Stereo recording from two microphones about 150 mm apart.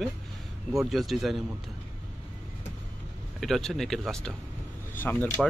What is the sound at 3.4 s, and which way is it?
Speech, centre (ahead or behind).